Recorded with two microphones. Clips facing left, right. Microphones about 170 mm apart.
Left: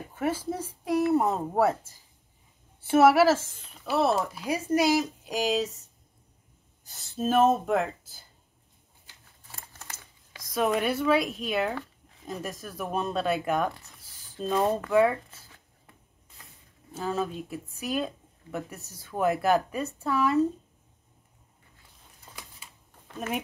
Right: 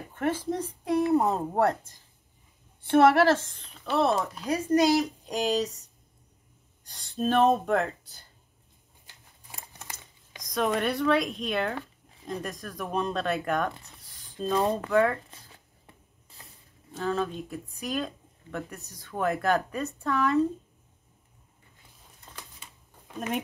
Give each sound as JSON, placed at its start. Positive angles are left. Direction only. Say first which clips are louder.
{"t": 0.1, "sound": "speech", "louder": "right 1 dB", "side_deg": 10}
{"t": 9.5, "sound": "typing", "louder": "right 1 dB", "side_deg": -15}
{"t": 10.5, "sound": "speech", "louder": "left 1 dB", "side_deg": 5}
{"t": 15.5, "sound": "a sound", "louder": "right 2 dB", "side_deg": -25}
{"t": 16.9, "sound": "speech", "louder": "right 1 dB", "side_deg": 5}
{"t": 22.2, "sound": "a sound", "louder": "even", "side_deg": 5}